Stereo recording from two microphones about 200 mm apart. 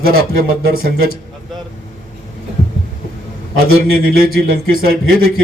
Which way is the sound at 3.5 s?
50° right (ahead or behind).